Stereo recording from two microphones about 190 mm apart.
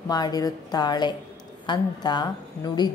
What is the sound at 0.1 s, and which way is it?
Speech, 20° left (ahead or behind).